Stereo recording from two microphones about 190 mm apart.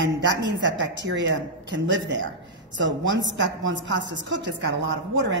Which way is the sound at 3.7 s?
70° right (ahead or behind).